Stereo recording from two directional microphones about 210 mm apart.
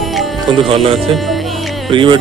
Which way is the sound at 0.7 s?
25° right (ahead or behind).